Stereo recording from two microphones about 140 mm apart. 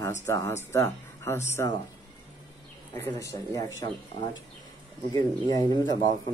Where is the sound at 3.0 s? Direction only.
20° left (ahead or behind).